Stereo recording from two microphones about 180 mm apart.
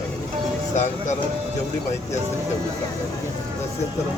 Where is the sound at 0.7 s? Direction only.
40° left (ahead or behind).